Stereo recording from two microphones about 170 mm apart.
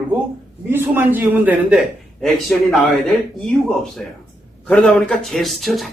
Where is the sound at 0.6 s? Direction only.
10° right (ahead or behind).